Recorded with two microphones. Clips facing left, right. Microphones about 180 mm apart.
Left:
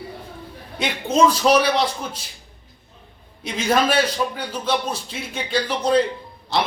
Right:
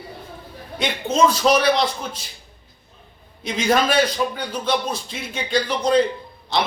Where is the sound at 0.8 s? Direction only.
10° left (ahead or behind).